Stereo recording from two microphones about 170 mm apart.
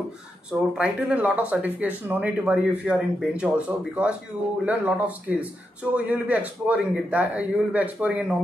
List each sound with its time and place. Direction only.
0.5 s a man's voice: 5° right (ahead or behind)